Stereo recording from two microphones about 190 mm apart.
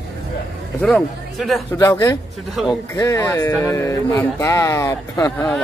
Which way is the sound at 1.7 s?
15° left (ahead or behind).